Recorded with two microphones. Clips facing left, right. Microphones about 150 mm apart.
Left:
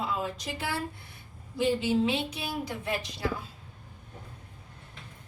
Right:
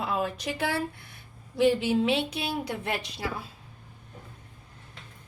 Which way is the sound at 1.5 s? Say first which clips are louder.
Right 3 dB; 65° right (ahead or behind).